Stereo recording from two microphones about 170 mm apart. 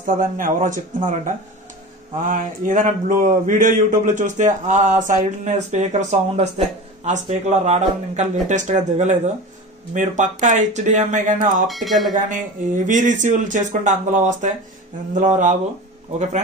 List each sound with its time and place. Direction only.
0.0 s speech: 50° right (ahead or behind)
11.6 s speech: centre (ahead or behind)
12.3 s speech: 50° right (ahead or behind)